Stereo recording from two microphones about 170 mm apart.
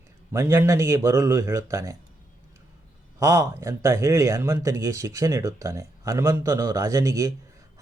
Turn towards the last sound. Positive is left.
turn(degrees=-20)  # may be behind; listen again after turning